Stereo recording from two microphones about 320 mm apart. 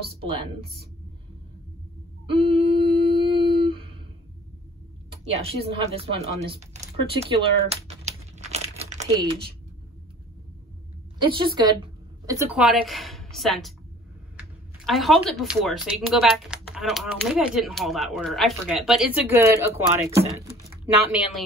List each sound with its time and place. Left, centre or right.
0.2 s speech: centre
2.2 s humming: centre
5.2 s speech: centre
6.5 s typing: centre
11.1 s speech: centre
14.9 s speech: centre